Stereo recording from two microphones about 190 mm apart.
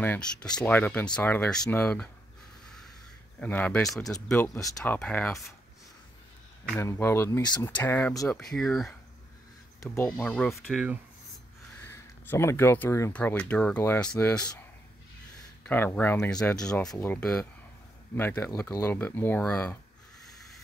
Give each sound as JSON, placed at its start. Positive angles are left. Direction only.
{"t": 0.0, "sound": "speech", "side_deg": 10}
{"t": 3.3, "sound": "speech", "side_deg": 10}
{"t": 4.6, "sound": "speech", "side_deg": 20}
{"t": 4.9, "sound": "speech", "side_deg": 5}
{"t": 6.7, "sound": "speech", "side_deg": 15}
{"t": 9.8, "sound": "speech", "side_deg": 15}
{"t": 15.6, "sound": "speech", "side_deg": 10}